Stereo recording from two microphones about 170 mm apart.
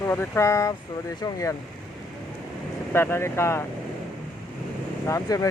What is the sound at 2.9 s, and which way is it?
Speech, 15° left (ahead or behind).